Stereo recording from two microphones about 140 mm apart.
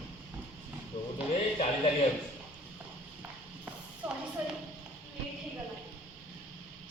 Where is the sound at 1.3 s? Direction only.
50° left (ahead or behind).